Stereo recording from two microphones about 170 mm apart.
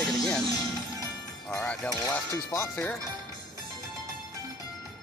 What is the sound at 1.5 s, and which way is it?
Speech, 5° left (ahead or behind).